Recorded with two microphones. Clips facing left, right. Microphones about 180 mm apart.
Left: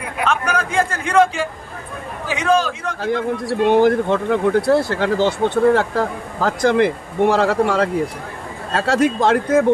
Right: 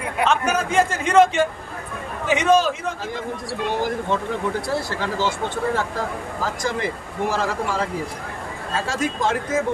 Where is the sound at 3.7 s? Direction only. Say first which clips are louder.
Left 9 dB; 65° left (ahead or behind).